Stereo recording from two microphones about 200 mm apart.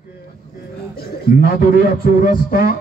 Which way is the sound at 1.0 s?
50° left (ahead or behind).